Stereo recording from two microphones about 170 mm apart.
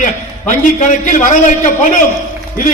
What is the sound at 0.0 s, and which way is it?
A man's voice, 50° left (ahead or behind).